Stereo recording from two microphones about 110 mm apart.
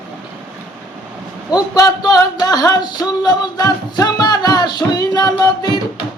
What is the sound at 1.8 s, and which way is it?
Music, 35° left (ahead or behind).